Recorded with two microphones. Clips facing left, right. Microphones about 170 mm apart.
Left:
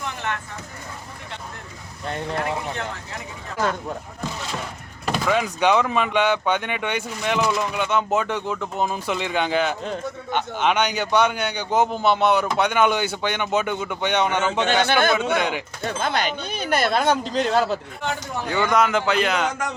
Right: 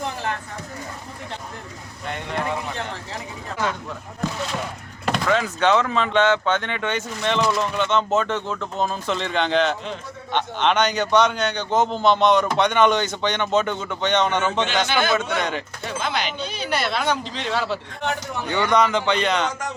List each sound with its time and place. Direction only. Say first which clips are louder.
0.0 s a sound: right 2 dB; 35° right (ahead or behind)
5.1 s speech: even; 10° left (ahead or behind)
14.8 s speech: left 3 dB; 55° left (ahead or behind)
15.1 s speech: left 1 dB; 10° left (ahead or behind)
15.8 s speech: left 3 dB; 50° left (ahead or behind)
18.4 s speech: right 1 dB; 5° left (ahead or behind)